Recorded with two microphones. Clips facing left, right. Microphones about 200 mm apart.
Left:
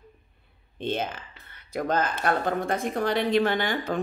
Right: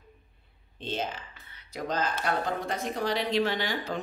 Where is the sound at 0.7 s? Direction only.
55° left (ahead or behind).